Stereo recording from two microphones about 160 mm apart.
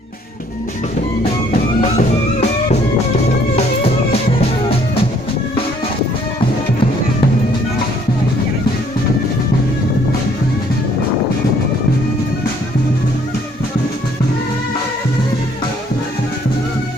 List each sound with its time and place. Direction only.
2.0 s music: 45° left (ahead or behind)